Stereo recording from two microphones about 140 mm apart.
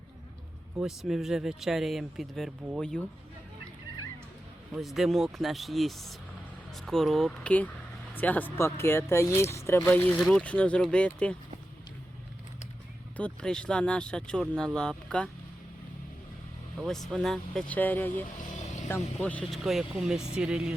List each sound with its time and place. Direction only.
0.8 s speech: centre (ahead or behind)
4.7 s speech: centre (ahead or behind)
13.1 s speech: 5° left (ahead or behind)
16.7 s speech: centre (ahead or behind)
19.2 s speech: 10° left (ahead or behind)